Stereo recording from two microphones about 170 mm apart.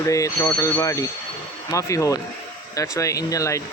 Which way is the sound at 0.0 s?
20° left (ahead or behind).